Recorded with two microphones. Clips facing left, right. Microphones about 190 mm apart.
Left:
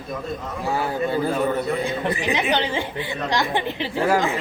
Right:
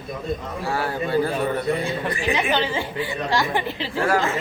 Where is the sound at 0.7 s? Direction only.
20° left (ahead or behind).